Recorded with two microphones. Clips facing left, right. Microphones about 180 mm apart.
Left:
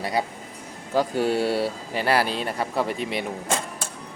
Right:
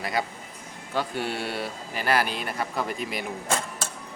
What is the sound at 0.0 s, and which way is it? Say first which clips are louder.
Speech: left 3 dB; 30° left (ahead or behind).